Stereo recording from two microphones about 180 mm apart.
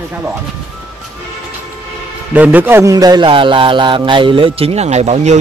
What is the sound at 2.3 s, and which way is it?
A man's voice, 10° right (ahead or behind).